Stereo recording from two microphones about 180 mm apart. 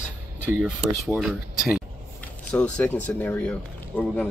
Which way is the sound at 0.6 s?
5° right (ahead or behind).